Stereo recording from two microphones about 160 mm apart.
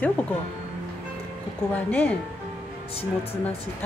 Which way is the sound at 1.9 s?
10° left (ahead or behind).